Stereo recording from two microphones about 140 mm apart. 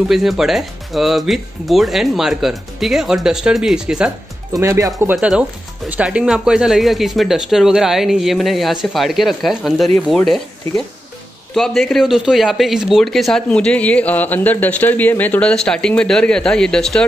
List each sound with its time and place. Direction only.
0.1 s speech: centre (ahead or behind)
4.5 s speech: 20° right (ahead or behind)
5.1 s speech: 5° right (ahead or behind)
11.5 s speech: centre (ahead or behind)